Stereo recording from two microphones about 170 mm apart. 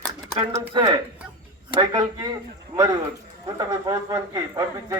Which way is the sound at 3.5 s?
20° right (ahead or behind).